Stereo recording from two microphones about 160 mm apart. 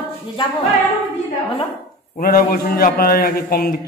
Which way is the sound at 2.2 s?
65° left (ahead or behind).